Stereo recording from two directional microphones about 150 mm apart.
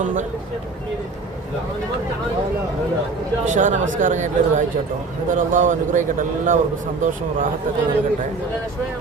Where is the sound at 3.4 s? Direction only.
55° right (ahead or behind).